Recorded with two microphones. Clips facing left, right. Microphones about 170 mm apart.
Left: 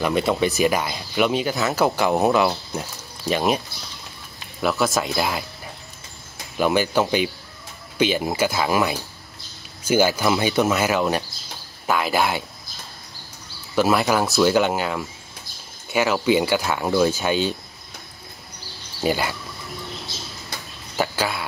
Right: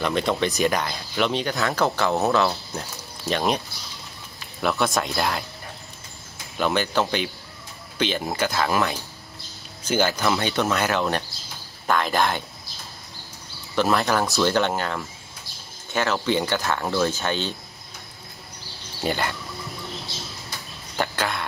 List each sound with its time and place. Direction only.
0.0 s speech: 5° left (ahead or behind)
6.6 s speech: 10° left (ahead or behind)
13.7 s speech: 10° left (ahead or behind)
19.0 s speech: 5° left (ahead or behind)
20.9 s speech: 5° left (ahead or behind)